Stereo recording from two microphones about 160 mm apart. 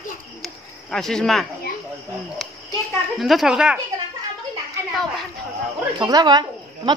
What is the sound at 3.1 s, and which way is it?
Speech, centre (ahead or behind).